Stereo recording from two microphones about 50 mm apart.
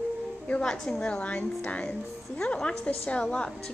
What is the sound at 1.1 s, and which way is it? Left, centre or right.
A woman's voice, left.